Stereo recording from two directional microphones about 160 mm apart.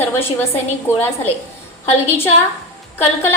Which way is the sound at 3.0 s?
15° left (ahead or behind).